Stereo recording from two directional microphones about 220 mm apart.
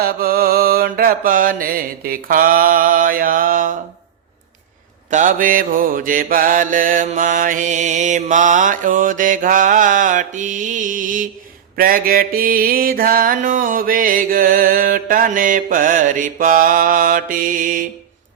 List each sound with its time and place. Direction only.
0.0 s mantra: 45° right (ahead or behind)
5.1 s mantra: 35° right (ahead or behind)